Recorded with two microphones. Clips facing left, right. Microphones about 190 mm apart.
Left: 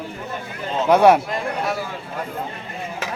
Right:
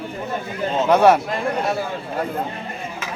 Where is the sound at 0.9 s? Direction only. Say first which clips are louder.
Left 1 dB; 10° left (ahead or behind).